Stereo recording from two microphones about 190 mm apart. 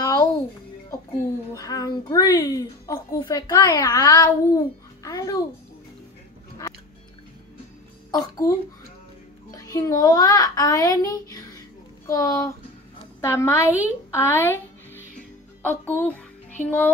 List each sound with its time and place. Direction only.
0.0 s music: 20° left (ahead or behind)
1.5 s a woman's voice: 20° left (ahead or behind)
8.1 s a woman's voice: 20° left (ahead or behind)
9.6 s a child's voice: 15° left (ahead or behind)
14.1 s music: 10° left (ahead or behind)